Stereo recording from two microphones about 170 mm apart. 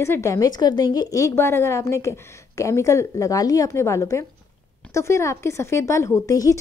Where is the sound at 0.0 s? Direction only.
15° left (ahead or behind).